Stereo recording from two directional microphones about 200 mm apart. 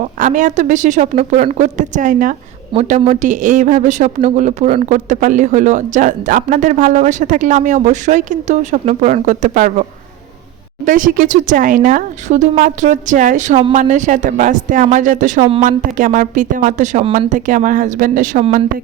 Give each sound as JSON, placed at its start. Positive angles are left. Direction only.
{"t": 0.0, "sound": "speech", "side_deg": -40}
{"t": 10.8, "sound": "speech", "side_deg": -40}